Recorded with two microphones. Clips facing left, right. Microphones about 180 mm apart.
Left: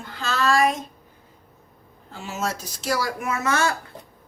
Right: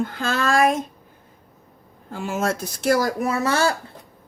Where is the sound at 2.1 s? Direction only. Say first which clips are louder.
Right 5 dB; 50° right (ahead or behind); by 3.7 s 30° right (ahead or behind).